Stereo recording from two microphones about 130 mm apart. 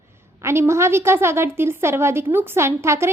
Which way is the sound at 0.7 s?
20° right (ahead or behind).